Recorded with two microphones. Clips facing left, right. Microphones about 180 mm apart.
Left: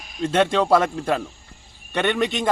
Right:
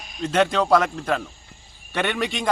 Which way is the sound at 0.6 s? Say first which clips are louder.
Left 1 dB; 5° left (ahead or behind).